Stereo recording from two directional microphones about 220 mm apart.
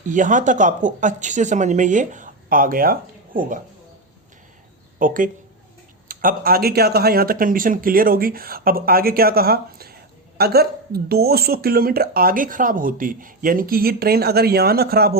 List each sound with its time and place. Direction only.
0.1 s speech: 35° right (ahead or behind)
4.9 s speech: 40° right (ahead or behind)